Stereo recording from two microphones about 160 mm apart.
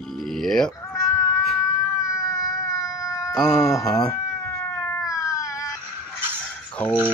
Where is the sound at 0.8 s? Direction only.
20° left (ahead or behind).